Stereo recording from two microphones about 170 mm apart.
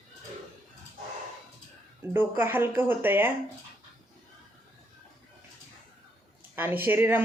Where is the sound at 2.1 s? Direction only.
15° right (ahead or behind).